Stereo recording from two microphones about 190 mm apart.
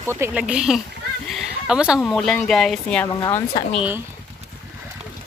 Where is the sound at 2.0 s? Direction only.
Centre (ahead or behind).